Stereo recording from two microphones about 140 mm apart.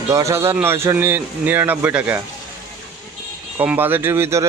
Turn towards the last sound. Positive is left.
turn(degrees=-20)  # may be behind; listen again after turning